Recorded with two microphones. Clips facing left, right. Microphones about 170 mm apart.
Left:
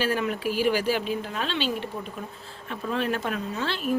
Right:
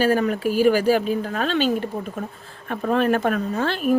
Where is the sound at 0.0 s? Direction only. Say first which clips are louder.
Right 7 dB; 45° right (ahead or behind).